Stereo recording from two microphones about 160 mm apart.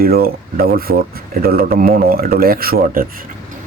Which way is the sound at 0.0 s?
70° right (ahead or behind).